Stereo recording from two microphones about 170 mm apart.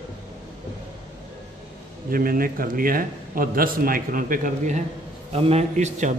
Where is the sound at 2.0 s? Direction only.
60° right (ahead or behind).